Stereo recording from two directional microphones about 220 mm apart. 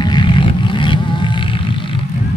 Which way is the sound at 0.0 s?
20° left (ahead or behind).